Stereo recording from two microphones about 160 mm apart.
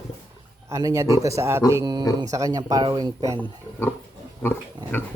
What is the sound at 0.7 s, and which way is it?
Mantra, 20° right (ahead or behind).